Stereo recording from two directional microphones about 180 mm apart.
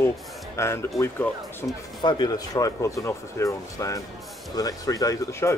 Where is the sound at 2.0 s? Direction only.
25° left (ahead or behind).